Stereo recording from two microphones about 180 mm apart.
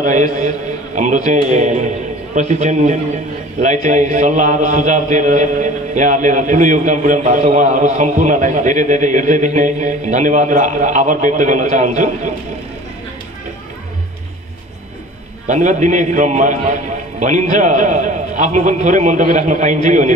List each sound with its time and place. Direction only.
0.0 s a man's voice: 45° right (ahead or behind)
15.4 s a man's voice: 45° right (ahead or behind)